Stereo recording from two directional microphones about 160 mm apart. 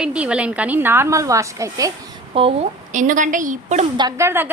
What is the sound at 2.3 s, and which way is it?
Speech, 35° right (ahead or behind).